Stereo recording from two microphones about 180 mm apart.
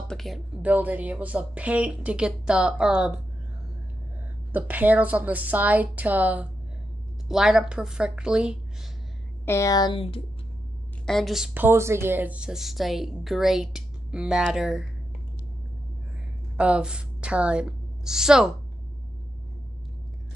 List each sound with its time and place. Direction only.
0.1 s speech: centre (ahead or behind)
4.5 s speech: 10° right (ahead or behind)
9.5 s a woman's voice: 20° left (ahead or behind)
11.1 s speech: centre (ahead or behind)
16.5 s a woman's voice: 5° right (ahead or behind)